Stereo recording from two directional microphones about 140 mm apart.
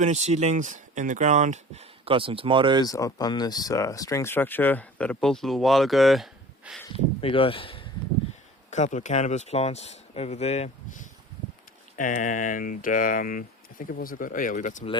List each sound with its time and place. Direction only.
0.0 s speech: 55° right (ahead or behind); by 2.8 s 35° right (ahead or behind)
2.8 s speech: 25° left (ahead or behind); by 6.8 s 5° right (ahead or behind)
7.2 s speech: 40° left (ahead or behind)
8.7 s speech: 60° left (ahead or behind)
11.9 s speech: 70° left (ahead or behind)